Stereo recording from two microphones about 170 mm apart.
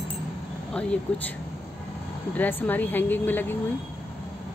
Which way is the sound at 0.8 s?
5° left (ahead or behind).